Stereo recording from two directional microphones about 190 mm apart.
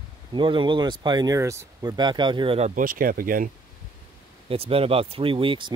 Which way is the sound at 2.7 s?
50° right (ahead or behind).